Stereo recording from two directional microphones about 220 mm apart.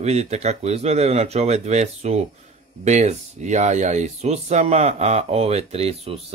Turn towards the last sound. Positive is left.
turn(degrees=-25)  # may be behind; listen again after turning